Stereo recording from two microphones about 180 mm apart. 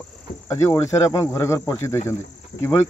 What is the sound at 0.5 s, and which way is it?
Speech, 15° left (ahead or behind).